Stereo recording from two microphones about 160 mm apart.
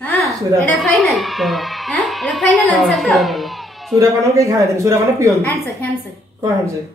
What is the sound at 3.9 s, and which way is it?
Speech, 20° right (ahead or behind).